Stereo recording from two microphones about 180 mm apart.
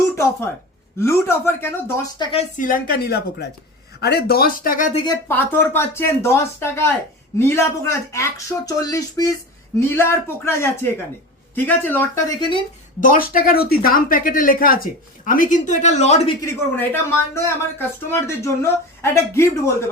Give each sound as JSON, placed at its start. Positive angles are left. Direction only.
{"t": 0.9, "sound": "speech", "side_deg": 15}
{"t": 2.1, "sound": "a woman's voice", "side_deg": 25}
{"t": 2.4, "sound": "a woman's voice", "side_deg": 50}
{"t": 5.3, "sound": "speech", "side_deg": 10}
{"t": 13.0, "sound": "speech", "side_deg": 50}
{"t": 16.4, "sound": "speech", "side_deg": 15}